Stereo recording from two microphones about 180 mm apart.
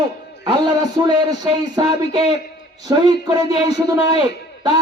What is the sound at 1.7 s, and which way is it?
A man's voice, 25° right (ahead or behind).